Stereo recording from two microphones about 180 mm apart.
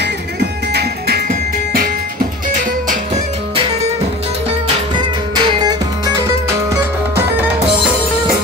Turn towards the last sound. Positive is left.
turn(degrees=-10)  # may be behind; listen again after turning